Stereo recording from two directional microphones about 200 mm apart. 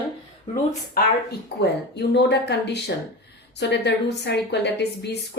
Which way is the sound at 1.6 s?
60° left (ahead or behind).